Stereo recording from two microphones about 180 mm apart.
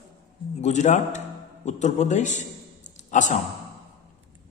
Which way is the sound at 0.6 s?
40° left (ahead or behind).